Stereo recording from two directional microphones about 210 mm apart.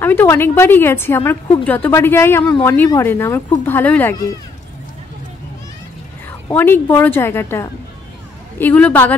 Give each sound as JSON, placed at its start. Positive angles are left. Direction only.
{"t": 0.0, "sound": "a woman's voice", "side_deg": 10}
{"t": 6.5, "sound": "a woman's voice", "side_deg": 10}